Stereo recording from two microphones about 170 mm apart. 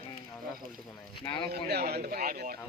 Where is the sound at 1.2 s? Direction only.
25° left (ahead or behind).